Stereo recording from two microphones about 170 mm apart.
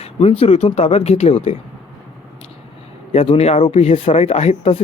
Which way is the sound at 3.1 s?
35° left (ahead or behind).